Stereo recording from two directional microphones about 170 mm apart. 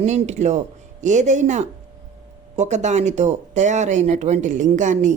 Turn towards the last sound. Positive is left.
turn(degrees=-45)  # may be behind; listen again after turning